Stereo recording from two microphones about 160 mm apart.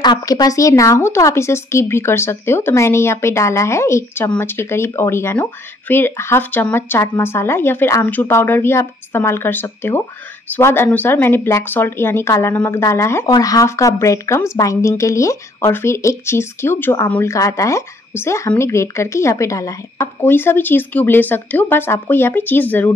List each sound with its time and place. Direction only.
0.0 s speech: 25° left (ahead or behind)